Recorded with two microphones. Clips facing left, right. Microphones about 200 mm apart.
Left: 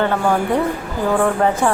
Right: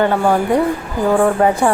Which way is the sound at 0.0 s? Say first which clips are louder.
Right 3 dB; 15° right (ahead or behind).